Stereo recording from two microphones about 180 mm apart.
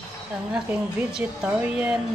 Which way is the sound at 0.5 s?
5° right (ahead or behind).